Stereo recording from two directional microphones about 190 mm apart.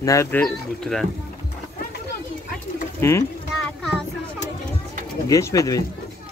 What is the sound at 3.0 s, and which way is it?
Speech, 15° left (ahead or behind).